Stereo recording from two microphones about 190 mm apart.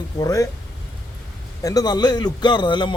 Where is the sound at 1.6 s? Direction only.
20° left (ahead or behind).